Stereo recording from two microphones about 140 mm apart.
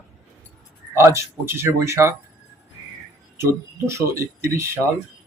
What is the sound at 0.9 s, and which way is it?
Speech, 20° right (ahead or behind).